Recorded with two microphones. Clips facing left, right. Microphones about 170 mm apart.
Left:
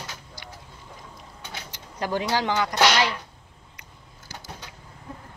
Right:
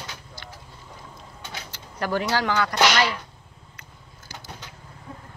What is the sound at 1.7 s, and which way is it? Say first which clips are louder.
Speech: right 1 dB; 15° left (ahead or behind).